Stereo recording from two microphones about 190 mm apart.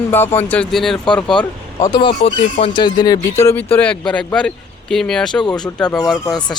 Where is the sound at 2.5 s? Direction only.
25° left (ahead or behind).